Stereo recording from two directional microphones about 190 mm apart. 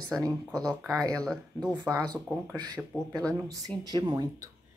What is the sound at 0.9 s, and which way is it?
Speech, 20° right (ahead or behind).